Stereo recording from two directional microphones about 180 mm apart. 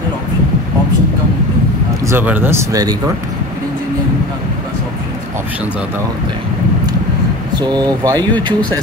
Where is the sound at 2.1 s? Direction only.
10° right (ahead or behind).